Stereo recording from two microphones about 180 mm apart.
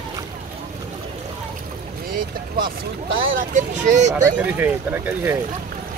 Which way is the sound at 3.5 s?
40° right (ahead or behind).